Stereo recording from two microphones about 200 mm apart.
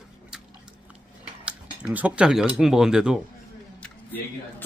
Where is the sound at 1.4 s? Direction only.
5° right (ahead or behind).